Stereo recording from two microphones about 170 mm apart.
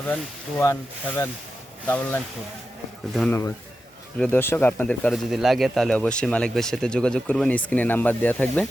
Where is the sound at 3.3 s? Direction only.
15° left (ahead or behind).